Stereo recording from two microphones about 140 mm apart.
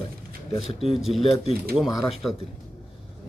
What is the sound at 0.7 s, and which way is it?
Speech, 45° left (ahead or behind).